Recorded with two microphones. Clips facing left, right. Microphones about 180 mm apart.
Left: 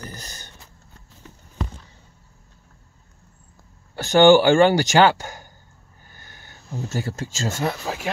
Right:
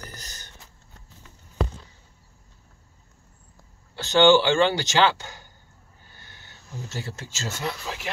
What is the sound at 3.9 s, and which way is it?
Speech, 45° left (ahead or behind).